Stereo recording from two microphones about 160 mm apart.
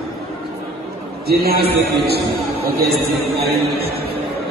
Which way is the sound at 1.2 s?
80° right.